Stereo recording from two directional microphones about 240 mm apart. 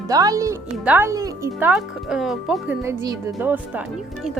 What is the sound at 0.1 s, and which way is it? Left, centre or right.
A woman's voice, centre.